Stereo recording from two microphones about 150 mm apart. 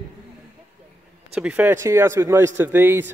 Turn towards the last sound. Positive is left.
turn(degrees=-15)  # may be behind; listen again after turning